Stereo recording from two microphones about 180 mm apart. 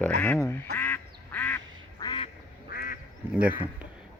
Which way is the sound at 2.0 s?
25° left (ahead or behind).